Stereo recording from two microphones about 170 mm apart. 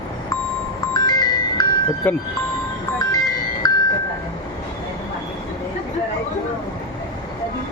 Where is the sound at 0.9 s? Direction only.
25° left (ahead or behind).